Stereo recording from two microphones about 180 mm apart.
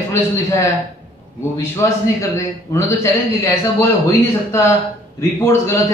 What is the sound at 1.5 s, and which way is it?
A man's voice, 15° left (ahead or behind).